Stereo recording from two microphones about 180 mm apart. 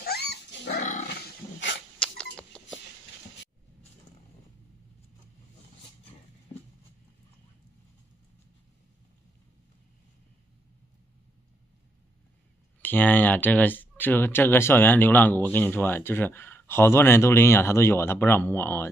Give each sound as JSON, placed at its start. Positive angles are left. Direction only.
{"t": 0.0, "sound": "dog", "side_deg": 65}
{"t": 0.7, "sound": "dog", "side_deg": 45}
{"t": 2.0, "sound": "a sound", "side_deg": 5}
{"t": 12.8, "sound": "speech", "side_deg": 10}